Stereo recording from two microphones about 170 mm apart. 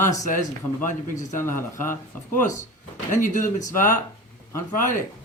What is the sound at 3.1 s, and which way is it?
Speech, 50° left (ahead or behind).